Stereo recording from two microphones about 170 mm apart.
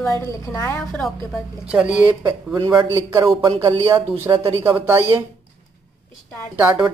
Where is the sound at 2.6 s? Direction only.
25° right (ahead or behind).